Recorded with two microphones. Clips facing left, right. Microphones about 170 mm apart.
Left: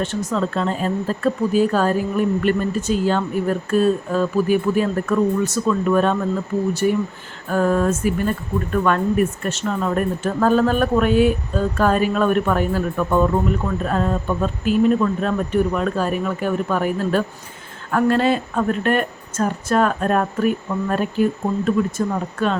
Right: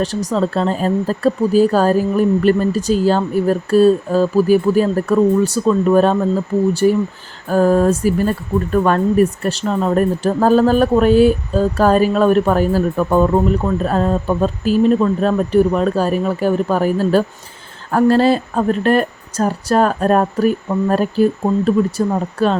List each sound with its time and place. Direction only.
0.0 s speech: 35° right (ahead or behind)